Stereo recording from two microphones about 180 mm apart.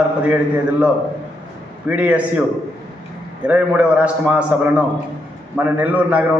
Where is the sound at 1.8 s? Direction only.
10° right (ahead or behind).